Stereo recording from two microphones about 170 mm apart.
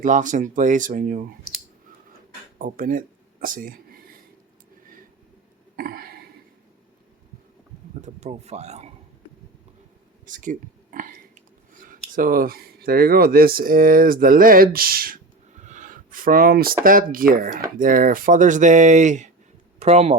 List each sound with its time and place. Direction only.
0.0 s speech: 50° right (ahead or behind)
2.6 s speech: 50° right (ahead or behind)
5.7 s a sound: 60° right (ahead or behind)
8.0 s speech: 40° right (ahead or behind)
10.2 s a sound: 50° right (ahead or behind)
12.1 s speech: 55° right (ahead or behind)